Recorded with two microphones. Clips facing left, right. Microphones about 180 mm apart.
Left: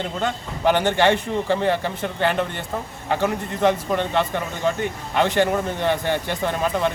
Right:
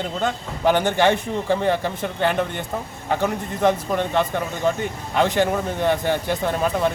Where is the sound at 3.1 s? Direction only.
10° left (ahead or behind).